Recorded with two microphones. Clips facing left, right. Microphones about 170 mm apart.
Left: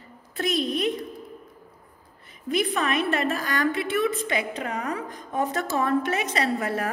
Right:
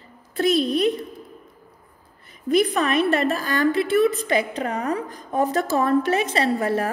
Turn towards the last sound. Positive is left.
turn(degrees=-30)  # may be behind; listen again after turning